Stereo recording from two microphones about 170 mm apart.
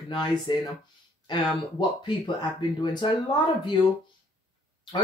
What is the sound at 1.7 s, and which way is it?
Speech, 25° left (ahead or behind).